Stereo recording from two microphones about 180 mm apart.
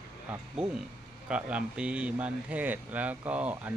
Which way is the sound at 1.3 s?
5° right (ahead or behind).